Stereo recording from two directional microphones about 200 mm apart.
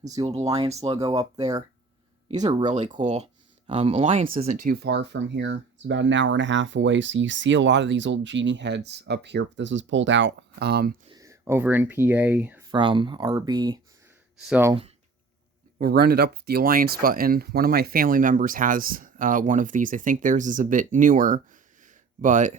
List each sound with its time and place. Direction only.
0.0 s speech: 20° right (ahead or behind)
0.7 s speech: 30° right (ahead or behind)
0.9 s speech: 20° right (ahead or behind)
2.6 s speech: 35° right (ahead or behind)
4.4 s speech: 45° right (ahead or behind)
11.1 s speech: 15° right (ahead or behind)
12.7 s speech: 25° right (ahead or behind)
14.3 s speech: 5° right (ahead or behind)
14.7 s speech: 30° right (ahead or behind)
15.8 s speech: 50° right (ahead or behind)